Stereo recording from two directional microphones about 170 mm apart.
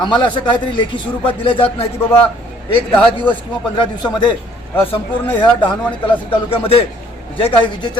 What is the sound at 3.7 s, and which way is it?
Speech, 25° left (ahead or behind).